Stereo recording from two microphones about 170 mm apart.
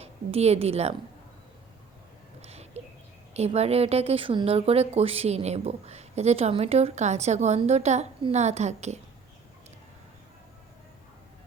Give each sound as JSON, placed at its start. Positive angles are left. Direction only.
{"t": 0.0, "sound": "a woman's voice", "side_deg": -35}
{"t": 2.4, "sound": "a sound", "side_deg": -40}
{"t": 3.3, "sound": "speech", "side_deg": -40}